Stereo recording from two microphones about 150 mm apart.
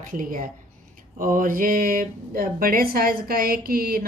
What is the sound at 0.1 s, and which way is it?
Speech, 65° right (ahead or behind).